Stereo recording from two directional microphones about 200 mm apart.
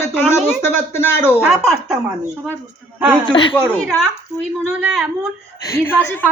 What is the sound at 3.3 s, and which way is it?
Speech, 25° left (ahead or behind).